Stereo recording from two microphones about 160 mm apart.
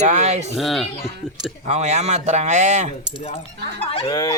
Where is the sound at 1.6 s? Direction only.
45° right (ahead or behind).